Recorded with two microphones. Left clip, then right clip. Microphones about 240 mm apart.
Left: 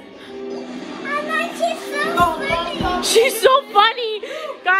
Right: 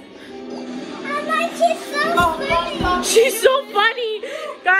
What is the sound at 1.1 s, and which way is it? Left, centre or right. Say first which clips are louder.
Speech: right 2 dB; centre.